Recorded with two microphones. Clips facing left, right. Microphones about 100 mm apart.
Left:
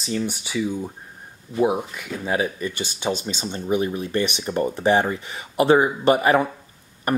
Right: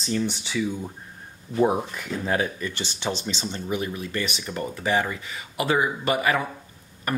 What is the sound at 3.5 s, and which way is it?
Speech, 25° left (ahead or behind).